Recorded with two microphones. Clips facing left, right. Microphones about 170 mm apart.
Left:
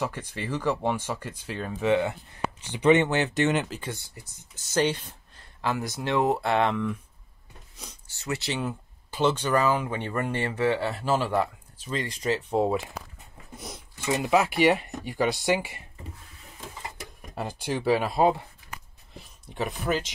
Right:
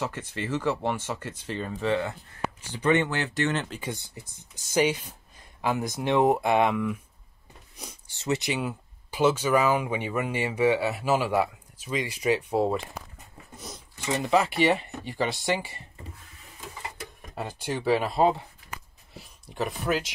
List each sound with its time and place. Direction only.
0.0 s speech: 10° left (ahead or behind)
3.8 s speech: 20° right (ahead or behind)
7.8 s speech: 20° right (ahead or behind)
8.5 s speech: 5° right (ahead or behind)
13.6 s speech: 10° left (ahead or behind)
17.4 s speech: centre (ahead or behind)
19.5 s speech: centre (ahead or behind)